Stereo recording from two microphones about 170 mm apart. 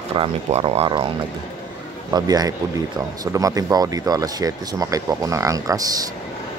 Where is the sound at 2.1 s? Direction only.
20° right (ahead or behind).